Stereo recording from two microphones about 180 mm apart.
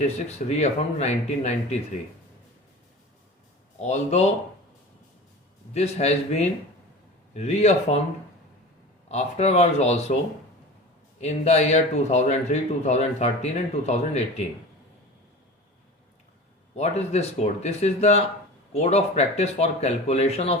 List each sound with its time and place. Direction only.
0.0 s a man's voice: 35° left (ahead or behind)
3.8 s a man's voice: 40° left (ahead or behind)
5.7 s a man's voice: 35° left (ahead or behind)
9.0 s a man's voice: 35° left (ahead or behind)
11.2 s a man's voice: 40° left (ahead or behind)
16.7 s a man's voice: 35° left (ahead or behind)